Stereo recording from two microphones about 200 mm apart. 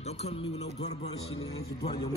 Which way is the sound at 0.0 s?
35° left (ahead or behind).